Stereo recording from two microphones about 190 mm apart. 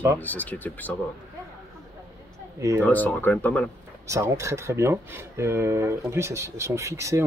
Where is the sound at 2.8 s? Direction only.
10° left (ahead or behind).